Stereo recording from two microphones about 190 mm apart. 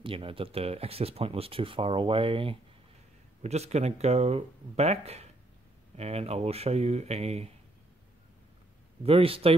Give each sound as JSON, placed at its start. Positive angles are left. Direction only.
{"t": 0.0, "sound": "speech", "side_deg": -30}
{"t": 9.0, "sound": "speech", "side_deg": -30}